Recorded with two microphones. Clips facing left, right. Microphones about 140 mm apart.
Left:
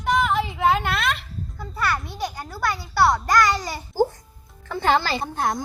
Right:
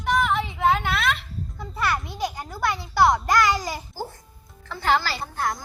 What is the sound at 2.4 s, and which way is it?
A woman's voice, 20° right (ahead or behind).